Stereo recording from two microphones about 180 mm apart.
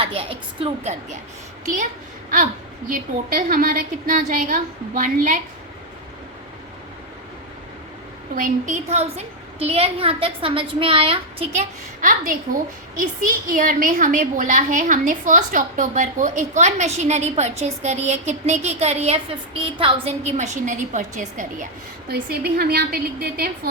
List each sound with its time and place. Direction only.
0.0 s a woman's voice: 30° right (ahead or behind)
2.9 s a woman's voice: 50° right (ahead or behind)
8.4 s a woman's voice: 45° right (ahead or behind); by 11.2 s 30° right (ahead or behind)
11.5 s a woman's voice: 45° right (ahead or behind)
22.1 s a woman's voice: 60° right (ahead or behind)